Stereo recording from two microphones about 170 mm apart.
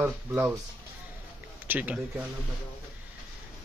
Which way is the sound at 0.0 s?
10° right (ahead or behind).